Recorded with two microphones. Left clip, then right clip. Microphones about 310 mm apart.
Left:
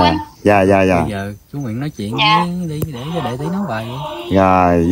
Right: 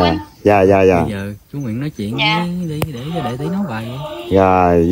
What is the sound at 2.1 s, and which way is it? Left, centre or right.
Speech, centre.